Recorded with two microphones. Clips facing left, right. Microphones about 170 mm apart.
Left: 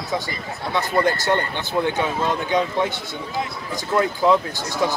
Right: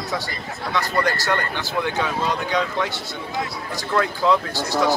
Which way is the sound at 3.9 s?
20° left (ahead or behind).